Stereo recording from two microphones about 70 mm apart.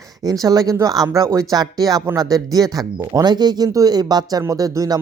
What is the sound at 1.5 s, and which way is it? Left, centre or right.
A woman's voice, right.